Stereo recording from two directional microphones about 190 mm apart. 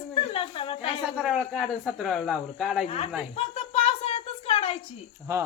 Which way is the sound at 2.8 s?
35° left (ahead or behind).